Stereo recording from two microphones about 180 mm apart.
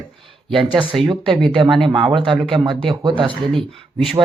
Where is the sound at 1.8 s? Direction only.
30° right (ahead or behind).